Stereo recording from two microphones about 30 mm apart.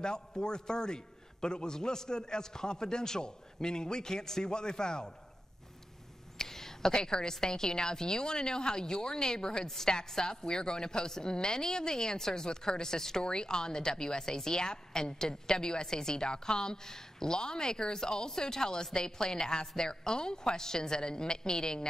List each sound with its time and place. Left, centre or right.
0.0 s a woman's voice: left
6.3 s a sound: centre
6.9 s a woman's voice: left